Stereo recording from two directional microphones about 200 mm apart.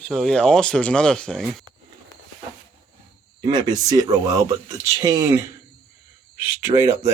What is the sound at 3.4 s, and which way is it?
Speech, 20° right (ahead or behind).